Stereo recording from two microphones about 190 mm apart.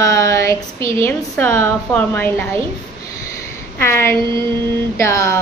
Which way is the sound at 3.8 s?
15° left (ahead or behind).